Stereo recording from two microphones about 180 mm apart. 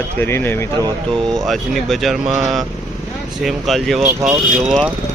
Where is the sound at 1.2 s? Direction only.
Centre (ahead or behind).